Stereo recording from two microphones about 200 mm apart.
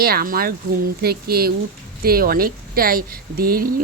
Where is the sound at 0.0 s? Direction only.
50° right (ahead or behind).